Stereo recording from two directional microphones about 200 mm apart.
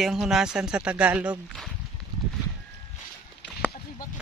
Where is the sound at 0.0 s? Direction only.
Centre (ahead or behind).